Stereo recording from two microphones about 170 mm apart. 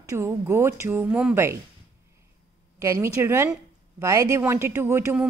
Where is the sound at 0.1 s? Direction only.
15° right (ahead or behind).